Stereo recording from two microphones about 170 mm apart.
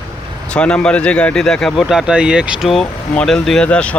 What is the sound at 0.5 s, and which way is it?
Speech, 5° left (ahead or behind).